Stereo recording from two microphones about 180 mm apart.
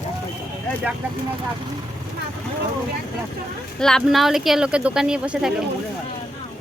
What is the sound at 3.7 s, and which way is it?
Speech, 5° left (ahead or behind).